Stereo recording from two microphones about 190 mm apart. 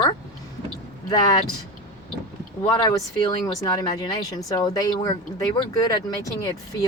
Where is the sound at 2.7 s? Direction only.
20° left (ahead or behind).